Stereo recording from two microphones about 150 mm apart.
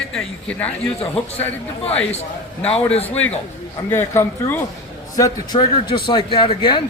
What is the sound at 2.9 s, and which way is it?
Speech, 45° left (ahead or behind).